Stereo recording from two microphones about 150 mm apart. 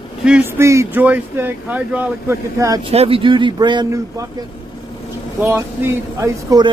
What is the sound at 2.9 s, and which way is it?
Speech, 40° right (ahead or behind).